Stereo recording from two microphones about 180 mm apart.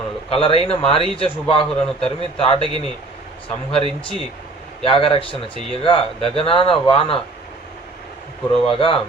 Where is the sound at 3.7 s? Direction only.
30° left (ahead or behind).